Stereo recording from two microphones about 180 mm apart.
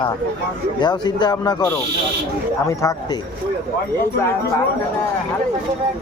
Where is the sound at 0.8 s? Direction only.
25° left (ahead or behind).